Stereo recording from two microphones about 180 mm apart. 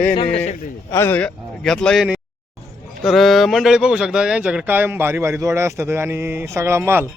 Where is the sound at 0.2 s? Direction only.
35° left (ahead or behind).